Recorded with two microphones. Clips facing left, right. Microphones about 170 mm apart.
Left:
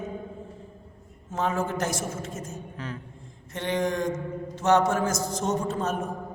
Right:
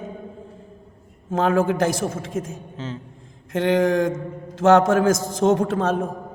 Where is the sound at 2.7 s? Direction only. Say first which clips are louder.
Right 6 dB; 25° right (ahead or behind).